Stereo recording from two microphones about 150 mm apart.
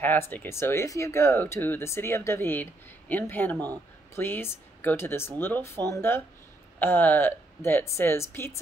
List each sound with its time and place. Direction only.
0.0 s speech: 10° left (ahead or behind)